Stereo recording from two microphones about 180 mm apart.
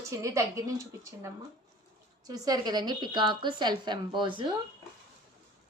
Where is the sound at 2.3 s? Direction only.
25° right (ahead or behind).